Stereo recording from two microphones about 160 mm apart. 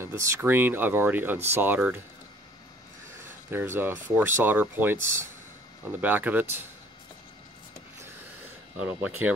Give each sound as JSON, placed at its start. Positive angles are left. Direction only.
{"t": 0.0, "sound": "speech", "side_deg": -15}
{"t": 3.4, "sound": "speech", "side_deg": -15}
{"t": 8.7, "sound": "speech", "side_deg": -10}